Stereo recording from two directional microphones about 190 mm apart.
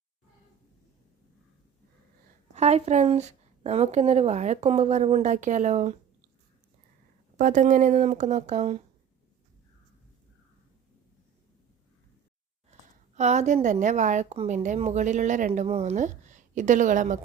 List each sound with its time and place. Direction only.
2.6 s a woman's voice: 35° right (ahead or behind)
7.3 s a woman's voice: 45° right (ahead or behind)
12.7 s a sound: 35° right (ahead or behind)
13.1 s a woman's voice: 35° right (ahead or behind)